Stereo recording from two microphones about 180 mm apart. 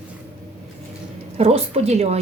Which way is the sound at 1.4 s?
35° right (ahead or behind).